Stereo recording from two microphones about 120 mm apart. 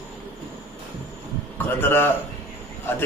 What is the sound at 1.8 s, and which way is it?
Speech, 20° left (ahead or behind).